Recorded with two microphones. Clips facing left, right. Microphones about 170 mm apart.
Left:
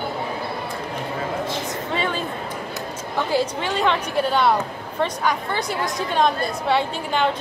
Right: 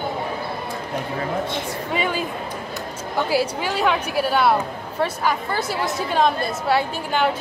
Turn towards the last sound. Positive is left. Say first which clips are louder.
# even
turn(degrees=-5)  # may be behind; listen again after turning